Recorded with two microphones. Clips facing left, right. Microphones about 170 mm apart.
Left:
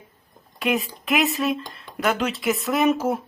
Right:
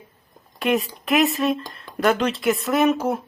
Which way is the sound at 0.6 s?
Centre (ahead or behind).